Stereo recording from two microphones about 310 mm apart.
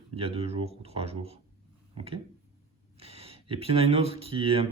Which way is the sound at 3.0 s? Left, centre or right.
Centre.